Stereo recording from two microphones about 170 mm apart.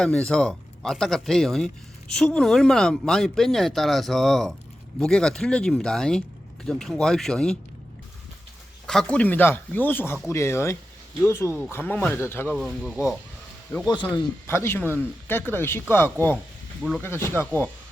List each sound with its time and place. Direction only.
0.0 s speech: 5° left (ahead or behind)
8.9 s speech: 5° left (ahead or behind)
12.5 s speech: centre (ahead or behind)
13.8 s speech: 25° left (ahead or behind)
14.4 s speech: 15° left (ahead or behind)